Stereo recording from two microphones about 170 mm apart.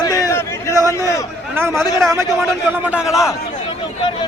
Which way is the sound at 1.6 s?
15° right (ahead or behind).